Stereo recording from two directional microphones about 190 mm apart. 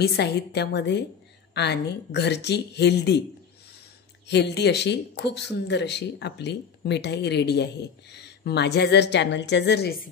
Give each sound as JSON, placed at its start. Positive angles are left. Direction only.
{"t": 0.0, "sound": "speech", "side_deg": 60}
{"t": 4.3, "sound": "speech", "side_deg": 65}